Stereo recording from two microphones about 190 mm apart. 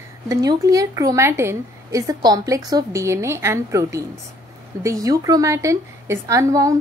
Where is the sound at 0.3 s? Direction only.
20° right (ahead or behind).